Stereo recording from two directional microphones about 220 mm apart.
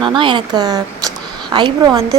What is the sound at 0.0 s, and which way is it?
A woman's voice, 20° right (ahead or behind).